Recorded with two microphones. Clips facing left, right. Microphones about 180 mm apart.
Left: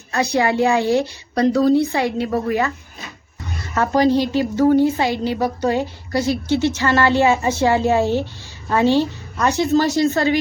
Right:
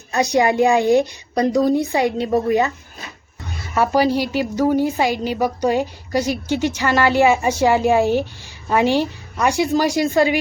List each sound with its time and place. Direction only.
0.1 s a woman's voice: 15° right (ahead or behind)
3.8 s a woman's voice: 10° right (ahead or behind)